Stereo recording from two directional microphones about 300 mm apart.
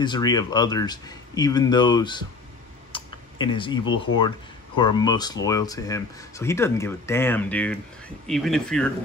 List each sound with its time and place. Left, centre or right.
0.0 s speech: centre
2.9 s computer keyboard: centre
4.7 s speech: centre